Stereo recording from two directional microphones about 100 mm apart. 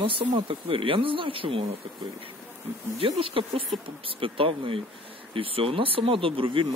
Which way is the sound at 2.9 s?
65° right (ahead or behind).